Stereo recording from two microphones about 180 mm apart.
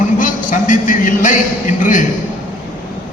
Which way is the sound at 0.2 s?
45° left (ahead or behind).